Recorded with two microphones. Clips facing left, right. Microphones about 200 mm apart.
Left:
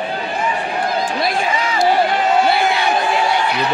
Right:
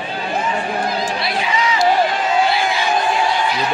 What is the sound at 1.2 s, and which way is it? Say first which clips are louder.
Run: left 1 dB; 50° left (ahead or behind).